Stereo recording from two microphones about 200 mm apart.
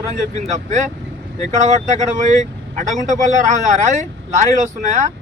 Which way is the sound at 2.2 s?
35° right (ahead or behind).